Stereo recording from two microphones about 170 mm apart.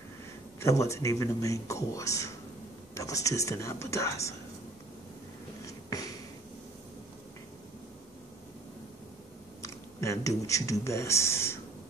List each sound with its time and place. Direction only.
0.6 s a man's voice: 15° left (ahead or behind)
5.7 s a sound: 20° left (ahead or behind)
9.6 s speech: 20° left (ahead or behind)